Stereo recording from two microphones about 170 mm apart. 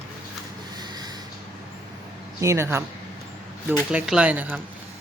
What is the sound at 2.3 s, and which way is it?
Speech, 15° right (ahead or behind).